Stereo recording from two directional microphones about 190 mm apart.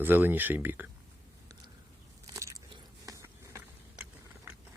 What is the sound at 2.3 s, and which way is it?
Biting, 15° right (ahead or behind).